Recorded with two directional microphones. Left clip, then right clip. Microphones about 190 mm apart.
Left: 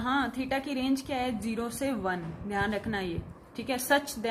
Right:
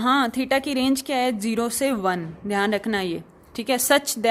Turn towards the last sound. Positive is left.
turn(degrees=-55)  # may be behind; listen again after turning